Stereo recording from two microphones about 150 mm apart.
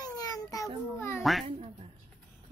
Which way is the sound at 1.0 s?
15° left (ahead or behind).